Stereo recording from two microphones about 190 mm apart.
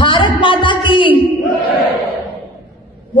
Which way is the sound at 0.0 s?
25° left (ahead or behind).